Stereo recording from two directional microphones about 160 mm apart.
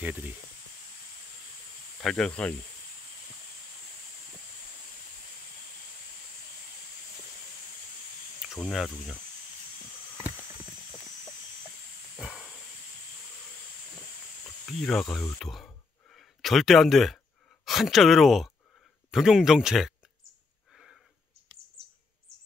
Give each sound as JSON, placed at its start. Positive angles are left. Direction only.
{"t": 0.0, "sound": "speech", "side_deg": -10}
{"t": 2.0, "sound": "speech", "side_deg": 5}
{"t": 8.5, "sound": "speech", "side_deg": 0}
{"t": 12.2, "sound": "hiss", "side_deg": 0}
{"t": 14.7, "sound": "speech", "side_deg": 0}
{"t": 15.3, "sound": "a sound", "side_deg": 0}
{"t": 17.6, "sound": "speech", "side_deg": 0}
{"t": 20.7, "sound": "sniff", "side_deg": 0}